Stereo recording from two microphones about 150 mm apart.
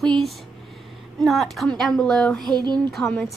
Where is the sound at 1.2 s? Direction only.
Centre (ahead or behind).